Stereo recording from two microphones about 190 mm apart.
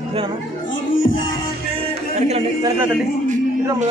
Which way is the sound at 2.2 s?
35° right (ahead or behind).